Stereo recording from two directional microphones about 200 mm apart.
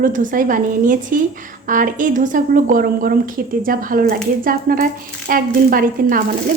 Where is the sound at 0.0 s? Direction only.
40° right (ahead or behind).